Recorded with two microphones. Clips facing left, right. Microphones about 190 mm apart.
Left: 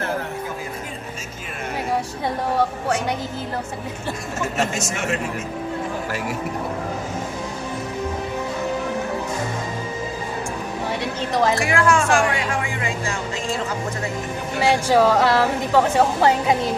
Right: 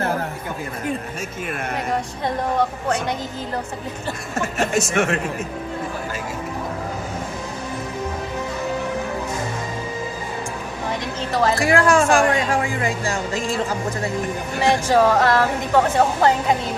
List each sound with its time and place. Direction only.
2.2 s a woman's voice: 10° left (ahead or behind)
4.7 s speech: 55° right (ahead or behind)
11.0 s a sound: 15° left (ahead or behind)
11.6 s speech: 35° right (ahead or behind)
14.6 s a woman's voice: 10° left (ahead or behind)